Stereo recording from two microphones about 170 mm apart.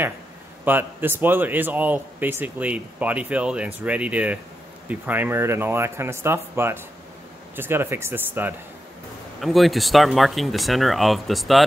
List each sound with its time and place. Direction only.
0.7 s speech: 10° right (ahead or behind)
9.4 s speech: centre (ahead or behind)